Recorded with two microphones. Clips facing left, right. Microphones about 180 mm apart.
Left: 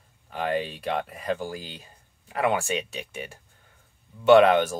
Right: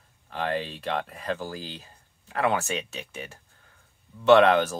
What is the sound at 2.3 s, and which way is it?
Speech, 15° left (ahead or behind).